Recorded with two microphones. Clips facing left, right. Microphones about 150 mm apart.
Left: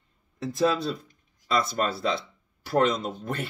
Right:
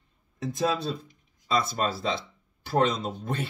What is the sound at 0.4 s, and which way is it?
Speech, 20° right (ahead or behind).